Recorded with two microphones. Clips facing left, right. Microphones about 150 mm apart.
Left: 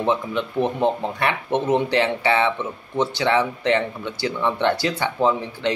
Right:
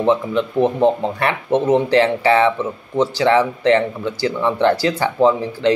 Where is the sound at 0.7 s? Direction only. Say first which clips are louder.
Right 5 dB; 35° right (ahead or behind).